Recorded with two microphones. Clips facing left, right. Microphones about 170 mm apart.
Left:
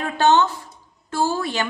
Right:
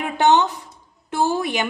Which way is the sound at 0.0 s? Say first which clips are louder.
Even; 15° right (ahead or behind).